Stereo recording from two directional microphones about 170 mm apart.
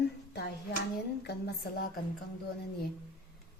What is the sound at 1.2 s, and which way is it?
Speech, 70° left (ahead or behind).